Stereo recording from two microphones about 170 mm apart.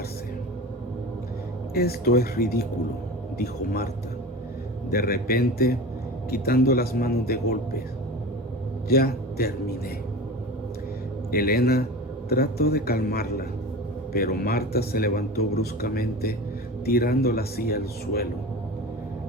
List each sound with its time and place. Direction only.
1.7 s a man's voice: 65° left (ahead or behind)
4.9 s a man's voice: 60° left (ahead or behind)
8.9 s a man's voice: 65° left (ahead or behind)
11.3 s a man's voice: 60° left (ahead or behind)